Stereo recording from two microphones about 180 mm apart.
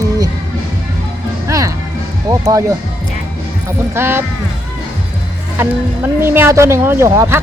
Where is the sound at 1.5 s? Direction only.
15° right (ahead or behind).